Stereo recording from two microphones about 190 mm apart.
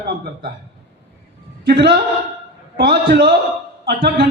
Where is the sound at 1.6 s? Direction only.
60° right (ahead or behind).